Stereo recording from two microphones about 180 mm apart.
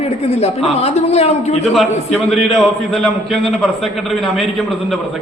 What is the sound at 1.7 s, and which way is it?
A man's voice, centre (ahead or behind).